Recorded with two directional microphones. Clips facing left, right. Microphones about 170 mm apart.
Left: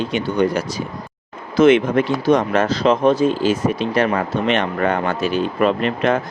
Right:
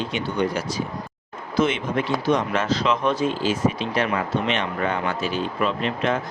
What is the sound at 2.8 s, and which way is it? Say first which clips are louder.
Speech: left 7 dB; 45° left (ahead or behind).